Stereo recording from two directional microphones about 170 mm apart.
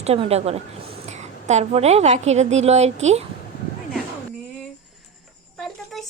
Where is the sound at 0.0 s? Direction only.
35° right (ahead or behind).